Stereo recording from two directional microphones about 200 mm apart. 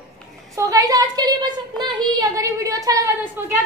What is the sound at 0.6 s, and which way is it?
A woman's voice, 15° right (ahead or behind).